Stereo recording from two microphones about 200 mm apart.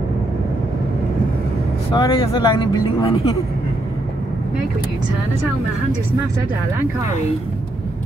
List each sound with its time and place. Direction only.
1.9 s speech: 25° left (ahead or behind)